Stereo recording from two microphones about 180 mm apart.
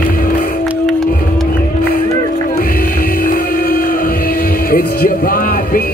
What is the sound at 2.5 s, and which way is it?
Music, 55° left (ahead or behind).